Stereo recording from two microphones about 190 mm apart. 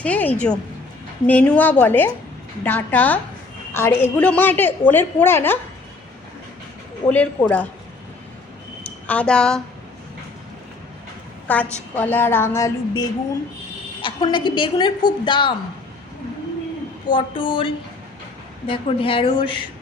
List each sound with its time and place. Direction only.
0.0 s a woman's voice: 10° left (ahead or behind)
7.1 s a woman's voice: 5° left (ahead or behind)
8.8 s a sound: 5° left (ahead or behind)
11.4 s a woman's voice: 10° left (ahead or behind); by 15.5 s 25° left (ahead or behind)
17.1 s a woman's voice: 25° left (ahead or behind)
18.7 s a woman's voice: 30° left (ahead or behind)